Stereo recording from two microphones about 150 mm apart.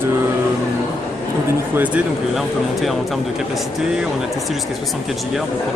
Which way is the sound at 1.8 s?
5° right (ahead or behind).